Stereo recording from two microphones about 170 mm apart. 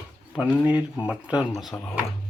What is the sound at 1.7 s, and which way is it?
Speech, 10° left (ahead or behind).